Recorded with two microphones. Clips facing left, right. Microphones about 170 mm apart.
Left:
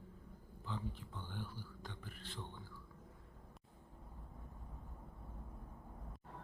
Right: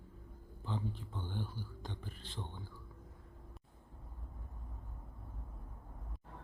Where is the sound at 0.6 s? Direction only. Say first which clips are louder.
Right 4 dB; 30° right (ahead or behind).